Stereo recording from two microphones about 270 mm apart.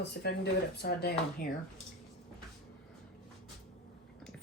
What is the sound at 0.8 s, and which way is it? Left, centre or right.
Speech, left.